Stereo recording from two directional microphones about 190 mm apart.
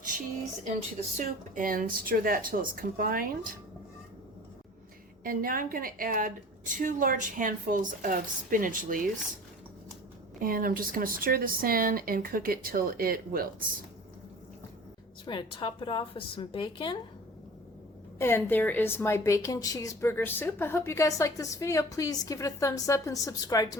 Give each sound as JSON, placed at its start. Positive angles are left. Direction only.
{"t": 1.1, "sound": "a woman's voice", "side_deg": -45}
{"t": 5.2, "sound": "a woman's voice", "side_deg": -50}
{"t": 10.4, "sound": "a woman's voice", "side_deg": -50}
{"t": 15.3, "sound": "a woman's voice", "side_deg": 25}
{"t": 18.2, "sound": "a woman's voice", "side_deg": 10}